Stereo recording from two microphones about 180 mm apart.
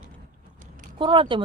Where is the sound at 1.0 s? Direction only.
25° right (ahead or behind).